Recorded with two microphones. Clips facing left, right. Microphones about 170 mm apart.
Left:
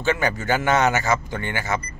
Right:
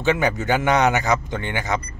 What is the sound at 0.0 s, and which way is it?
Speech, 15° right (ahead or behind).